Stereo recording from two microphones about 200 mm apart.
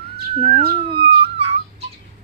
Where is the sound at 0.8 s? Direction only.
25° right (ahead or behind).